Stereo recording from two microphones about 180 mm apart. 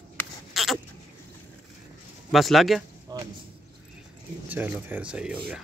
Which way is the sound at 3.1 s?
20° right (ahead or behind).